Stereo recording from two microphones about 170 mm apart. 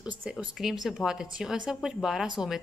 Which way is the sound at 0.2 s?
10° right (ahead or behind).